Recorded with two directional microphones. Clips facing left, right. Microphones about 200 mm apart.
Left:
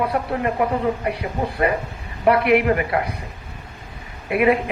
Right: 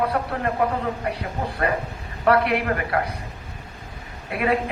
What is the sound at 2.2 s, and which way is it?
Speech, 15° left (ahead or behind).